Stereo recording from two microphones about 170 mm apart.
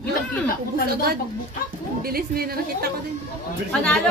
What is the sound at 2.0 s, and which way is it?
Speech, 60° right (ahead or behind).